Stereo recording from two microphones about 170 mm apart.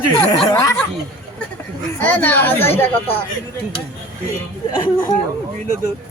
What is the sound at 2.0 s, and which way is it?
Speech, 10° left (ahead or behind).